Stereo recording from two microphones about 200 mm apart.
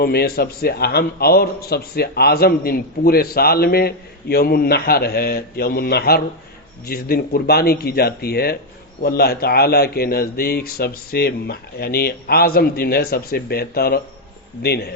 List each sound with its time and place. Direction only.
0.0 s a man's voice: 50° left (ahead or behind)